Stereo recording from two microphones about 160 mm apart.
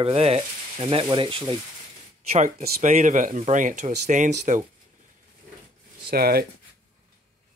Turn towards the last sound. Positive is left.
turn(degrees=-75)  # may be behind; listen again after turning